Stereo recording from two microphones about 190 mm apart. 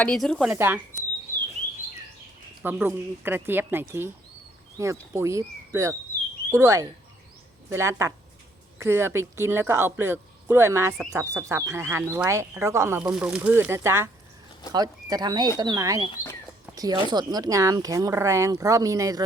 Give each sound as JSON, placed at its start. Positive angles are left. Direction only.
{"t": 0.0, "sound": "speech", "side_deg": 5}
{"t": 2.6, "sound": "speech", "side_deg": -10}
{"t": 16.0, "sound": "speech", "side_deg": 20}
{"t": 16.7, "sound": "speech", "side_deg": -20}